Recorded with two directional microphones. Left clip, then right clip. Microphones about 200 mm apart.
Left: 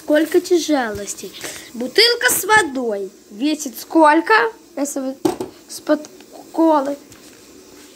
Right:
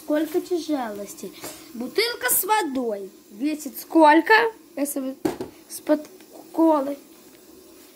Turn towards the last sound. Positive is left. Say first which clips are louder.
# left 4 dB
turn(degrees=-10)  # may be behind; listen again after turning